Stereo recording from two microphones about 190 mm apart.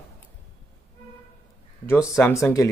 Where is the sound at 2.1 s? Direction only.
15° left (ahead or behind).